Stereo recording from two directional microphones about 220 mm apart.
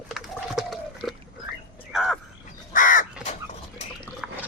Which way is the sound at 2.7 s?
35° left (ahead or behind).